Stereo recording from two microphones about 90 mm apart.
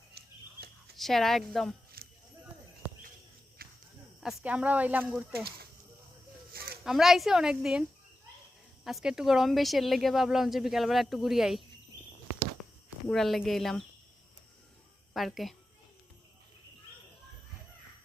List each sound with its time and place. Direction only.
0.9 s speech: centre (ahead or behind)
4.4 s speech: 15° right (ahead or behind)
6.8 s speech: 5° right (ahead or behind)
13.1 s speech: 5° left (ahead or behind)
15.1 s speech: centre (ahead or behind)